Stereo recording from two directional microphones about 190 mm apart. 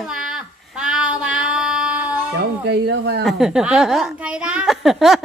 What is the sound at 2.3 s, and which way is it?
Speech, 60° right (ahead or behind).